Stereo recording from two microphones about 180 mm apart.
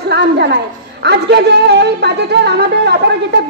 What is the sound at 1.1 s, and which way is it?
Speech, 70° right (ahead or behind).